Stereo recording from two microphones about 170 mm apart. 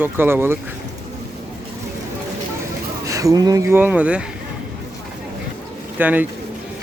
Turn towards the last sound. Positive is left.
turn(degrees=-10)  # may be behind; listen again after turning